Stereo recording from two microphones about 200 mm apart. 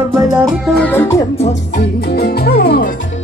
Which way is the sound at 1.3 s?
35° left (ahead or behind).